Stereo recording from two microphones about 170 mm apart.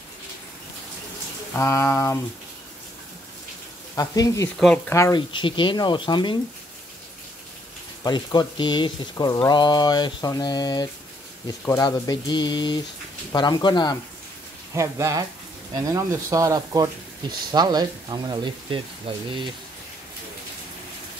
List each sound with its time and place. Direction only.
1.5 s a sound: 15° left (ahead or behind)
3.9 s speech: 20° left (ahead or behind)
4.6 s speech: 5° left (ahead or behind)
4.9 s a sound: 15° left (ahead or behind)
5.3 s speech: 30° left (ahead or behind)
8.0 s speech: 25° left (ahead or behind)
14.7 s speech: 15° right (ahead or behind)